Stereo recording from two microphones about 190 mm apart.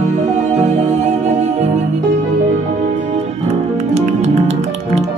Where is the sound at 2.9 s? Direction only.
35° right (ahead or behind).